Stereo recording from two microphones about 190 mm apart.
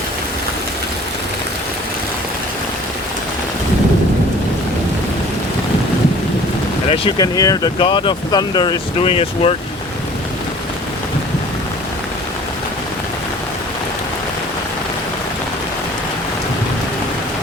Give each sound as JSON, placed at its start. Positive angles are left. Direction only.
{"t": 6.9, "sound": "speech", "side_deg": 25}